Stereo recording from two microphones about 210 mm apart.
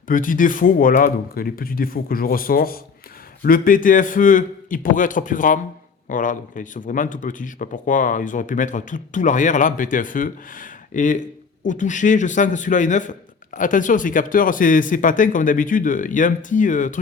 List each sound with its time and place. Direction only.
0.1 s speech: 40° left (ahead or behind)